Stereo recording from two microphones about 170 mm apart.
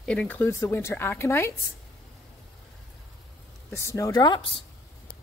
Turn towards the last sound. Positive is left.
turn(degrees=30)  # may be behind; listen again after turning